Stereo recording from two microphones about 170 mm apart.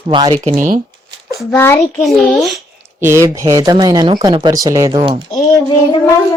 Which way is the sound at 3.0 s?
15° right (ahead or behind).